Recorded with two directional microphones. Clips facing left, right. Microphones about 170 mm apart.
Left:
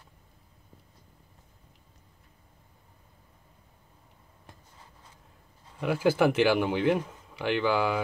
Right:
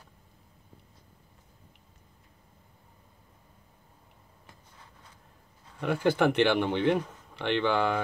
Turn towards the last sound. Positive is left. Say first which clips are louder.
# even
turn(degrees=5)  # may be behind; listen again after turning